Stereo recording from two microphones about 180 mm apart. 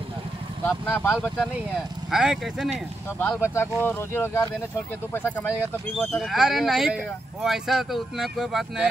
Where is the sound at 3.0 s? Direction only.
10° left (ahead or behind).